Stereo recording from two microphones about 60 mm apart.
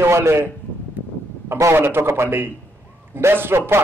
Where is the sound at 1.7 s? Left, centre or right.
Right.